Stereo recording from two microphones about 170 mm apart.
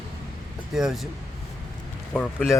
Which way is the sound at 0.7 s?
Centre (ahead or behind).